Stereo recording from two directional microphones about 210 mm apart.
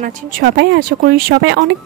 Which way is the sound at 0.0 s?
45° right (ahead or behind).